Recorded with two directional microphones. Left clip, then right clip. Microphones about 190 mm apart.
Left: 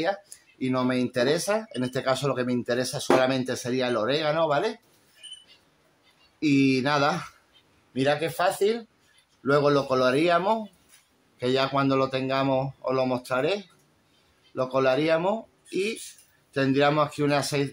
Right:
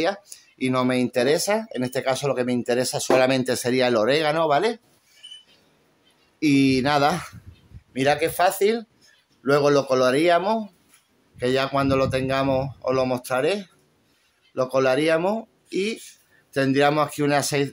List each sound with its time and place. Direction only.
0.6 s speech: 40° right (ahead or behind)
6.4 s a man's voice: 30° right (ahead or behind)